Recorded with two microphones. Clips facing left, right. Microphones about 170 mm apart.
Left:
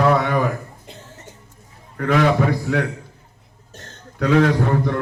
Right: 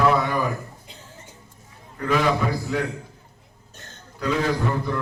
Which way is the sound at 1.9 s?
65° left (ahead or behind).